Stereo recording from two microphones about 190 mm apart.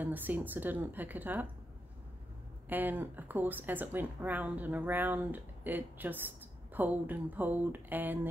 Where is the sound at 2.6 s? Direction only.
10° right (ahead or behind).